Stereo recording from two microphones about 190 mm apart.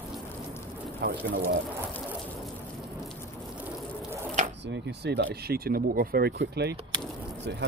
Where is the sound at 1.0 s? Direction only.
55° right (ahead or behind).